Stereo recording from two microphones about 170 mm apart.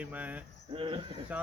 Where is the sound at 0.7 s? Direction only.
30° right (ahead or behind).